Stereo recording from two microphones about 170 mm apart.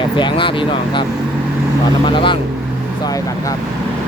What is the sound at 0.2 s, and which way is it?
Speech, 30° left (ahead or behind).